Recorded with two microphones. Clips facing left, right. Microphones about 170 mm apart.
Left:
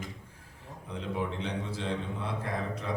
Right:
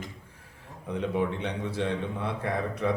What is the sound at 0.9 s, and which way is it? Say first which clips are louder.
A man's voice: right 5 dB; 60° right (ahead or behind).